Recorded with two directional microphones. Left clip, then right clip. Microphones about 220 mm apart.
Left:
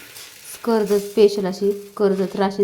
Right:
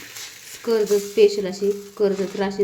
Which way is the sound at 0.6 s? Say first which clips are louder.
Left 1 dB; 20° left (ahead or behind).